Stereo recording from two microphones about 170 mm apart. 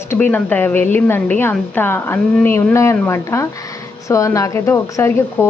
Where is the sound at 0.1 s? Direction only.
10° left (ahead or behind).